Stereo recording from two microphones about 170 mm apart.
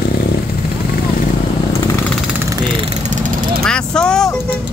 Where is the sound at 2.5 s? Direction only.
25° right (ahead or behind).